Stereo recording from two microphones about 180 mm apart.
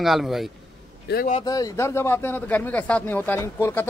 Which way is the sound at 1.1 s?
65° left (ahead or behind).